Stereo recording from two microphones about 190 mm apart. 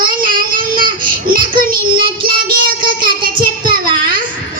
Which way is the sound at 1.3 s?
50° right (ahead or behind).